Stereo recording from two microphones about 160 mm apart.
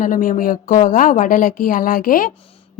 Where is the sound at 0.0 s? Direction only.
55° left (ahead or behind).